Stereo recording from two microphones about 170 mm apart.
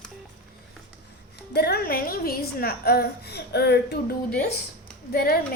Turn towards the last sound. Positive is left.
turn(degrees=65)  # may be behind; listen again after turning